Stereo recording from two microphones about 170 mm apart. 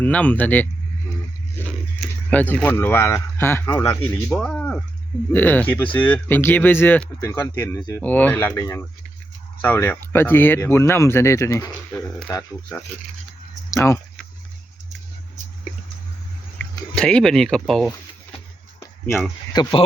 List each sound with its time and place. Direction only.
0.0 s speech: 10° left (ahead or behind)
1.6 s biting: 10° left (ahead or behind)
2.3 s speech: 10° left (ahead or behind)
4.3 s speech: 5° left (ahead or behind); by 8.0 s 20° left (ahead or behind)
8.0 s speech: 10° left (ahead or behind)
16.6 s speech: 5° left (ahead or behind)
19.6 s speech: 25° left (ahead or behind)